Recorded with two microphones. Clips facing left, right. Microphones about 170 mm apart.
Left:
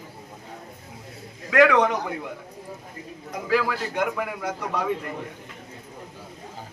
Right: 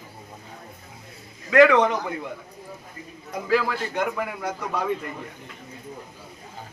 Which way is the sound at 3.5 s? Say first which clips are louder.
Right 1 dB; 10° left (ahead or behind).